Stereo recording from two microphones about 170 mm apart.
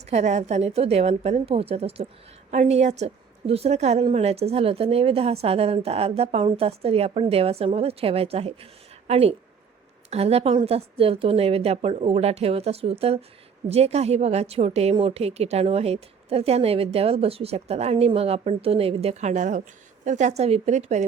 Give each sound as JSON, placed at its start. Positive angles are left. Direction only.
{"t": 0.0, "sound": "a woman's voice", "side_deg": -40}